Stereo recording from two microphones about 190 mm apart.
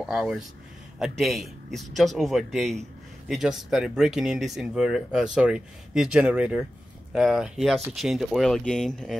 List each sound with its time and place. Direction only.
0.0 s speech: centre (ahead or behind)